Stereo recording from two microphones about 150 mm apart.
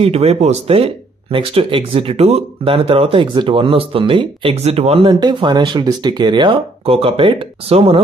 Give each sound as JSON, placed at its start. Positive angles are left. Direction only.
{"t": 0.0, "sound": "speech", "side_deg": -40}